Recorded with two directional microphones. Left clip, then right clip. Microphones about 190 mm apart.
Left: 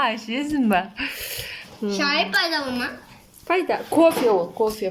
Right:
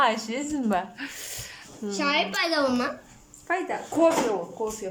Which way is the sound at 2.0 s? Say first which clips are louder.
Left 4 dB; 15° right (ahead or behind).